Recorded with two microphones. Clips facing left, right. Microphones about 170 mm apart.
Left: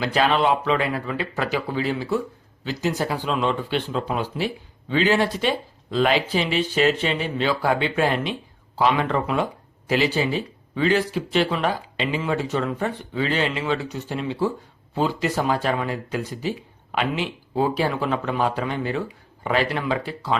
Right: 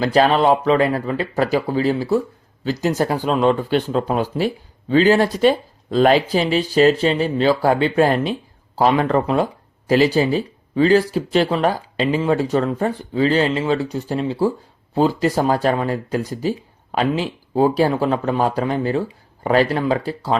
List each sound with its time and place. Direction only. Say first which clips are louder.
0.0 s speech: right 5 dB; 40° right (ahead or behind)